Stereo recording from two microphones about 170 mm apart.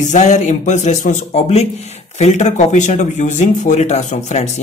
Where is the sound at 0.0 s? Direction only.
45° left (ahead or behind).